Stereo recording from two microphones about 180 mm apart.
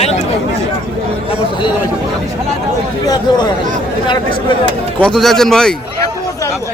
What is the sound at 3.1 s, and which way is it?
Speech, 25° left (ahead or behind).